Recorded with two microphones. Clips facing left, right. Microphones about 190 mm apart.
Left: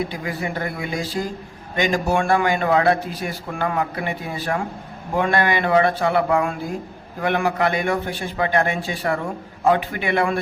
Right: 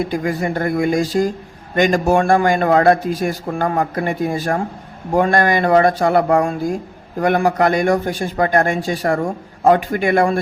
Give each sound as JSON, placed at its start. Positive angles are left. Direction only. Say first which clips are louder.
{"t": 0.1, "sound": "a man's voice", "louder": "right 7 dB", "side_deg": -45}